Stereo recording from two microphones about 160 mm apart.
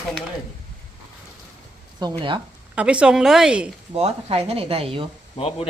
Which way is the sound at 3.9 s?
40° right (ahead or behind).